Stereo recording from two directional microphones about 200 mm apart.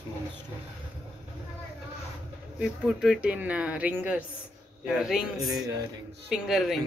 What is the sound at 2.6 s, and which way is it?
Speech, 5° right (ahead or behind).